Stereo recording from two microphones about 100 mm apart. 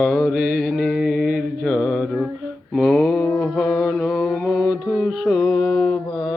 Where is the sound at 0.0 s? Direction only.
Centre (ahead or behind).